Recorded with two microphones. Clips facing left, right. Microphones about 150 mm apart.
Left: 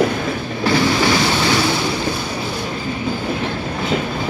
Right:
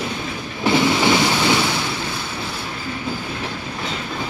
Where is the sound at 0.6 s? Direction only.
20° right (ahead or behind).